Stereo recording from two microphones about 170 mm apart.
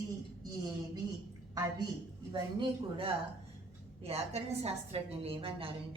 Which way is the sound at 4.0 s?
35° right (ahead or behind).